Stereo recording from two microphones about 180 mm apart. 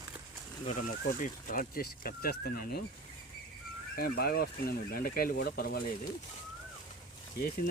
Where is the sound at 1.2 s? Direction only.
50° left (ahead or behind).